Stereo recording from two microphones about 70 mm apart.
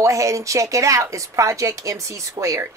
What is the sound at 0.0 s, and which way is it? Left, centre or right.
Speech, right.